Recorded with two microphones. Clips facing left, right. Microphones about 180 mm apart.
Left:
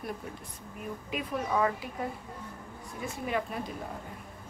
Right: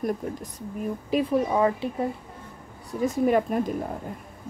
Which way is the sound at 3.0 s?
45° right (ahead or behind).